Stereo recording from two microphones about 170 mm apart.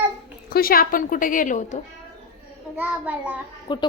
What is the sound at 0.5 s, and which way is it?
A woman's voice, 60° left (ahead or behind).